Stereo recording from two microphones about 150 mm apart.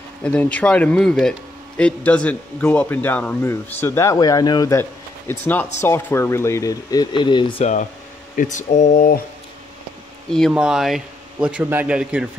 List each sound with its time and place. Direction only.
0.2 s a man's voice: 10° left (ahead or behind); by 7.6 s 30° left (ahead or behind)
8.4 s speech: 55° left (ahead or behind)
10.3 s speech: centre (ahead or behind)